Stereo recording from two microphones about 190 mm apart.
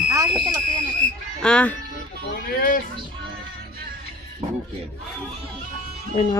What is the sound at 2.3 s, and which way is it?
Speech, 45° left (ahead or behind).